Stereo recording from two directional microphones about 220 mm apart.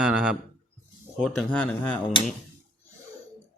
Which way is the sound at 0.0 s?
5° right (ahead or behind).